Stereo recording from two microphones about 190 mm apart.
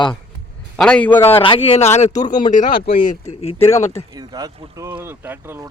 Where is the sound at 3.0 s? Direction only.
40° left (ahead or behind).